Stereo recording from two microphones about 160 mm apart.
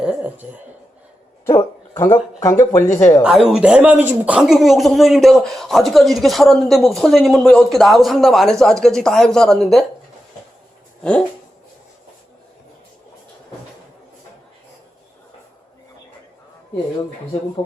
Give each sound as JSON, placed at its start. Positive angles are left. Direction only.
{"t": 0.0, "sound": "a sound", "side_deg": -10}
{"t": 2.4, "sound": "speech", "side_deg": 15}
{"t": 3.2, "sound": "speech", "side_deg": -5}
{"t": 11.0, "sound": "speech", "side_deg": 5}